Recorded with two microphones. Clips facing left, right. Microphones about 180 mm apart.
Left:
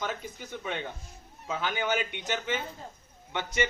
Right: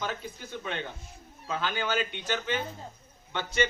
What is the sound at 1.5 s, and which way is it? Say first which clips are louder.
A man's voice: left 1 dB; 15° left (ahead or behind).